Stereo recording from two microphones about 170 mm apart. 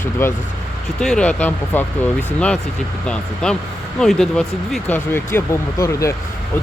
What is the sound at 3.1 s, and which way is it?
Speech, 5° left (ahead or behind).